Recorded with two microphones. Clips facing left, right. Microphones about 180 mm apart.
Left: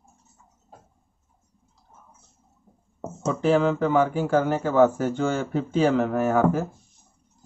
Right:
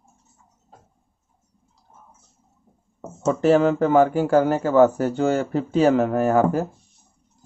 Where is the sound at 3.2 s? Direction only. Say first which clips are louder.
Right 4 dB; 45° right (ahead or behind).